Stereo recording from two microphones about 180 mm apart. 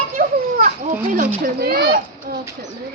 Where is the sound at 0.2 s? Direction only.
45° right (ahead or behind).